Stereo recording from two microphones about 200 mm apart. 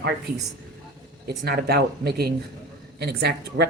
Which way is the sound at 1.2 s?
50° right (ahead or behind).